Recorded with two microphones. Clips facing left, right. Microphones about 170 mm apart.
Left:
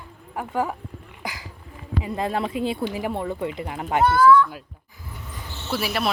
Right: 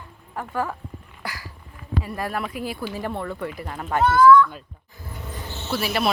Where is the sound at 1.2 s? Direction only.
20° left (ahead or behind).